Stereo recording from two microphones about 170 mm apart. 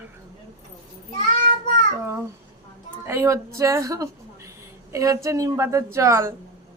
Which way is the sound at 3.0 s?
15° right (ahead or behind).